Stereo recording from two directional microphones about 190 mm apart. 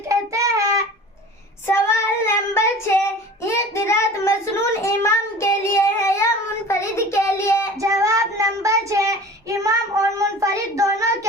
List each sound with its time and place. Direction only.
0.1 s child singing: 15° right (ahead or behind)
1.6 s child singing: 15° left (ahead or behind)
7.8 s child singing: 15° right (ahead or behind)